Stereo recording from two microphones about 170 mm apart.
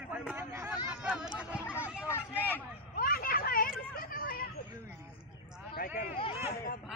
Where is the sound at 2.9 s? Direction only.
60° left (ahead or behind).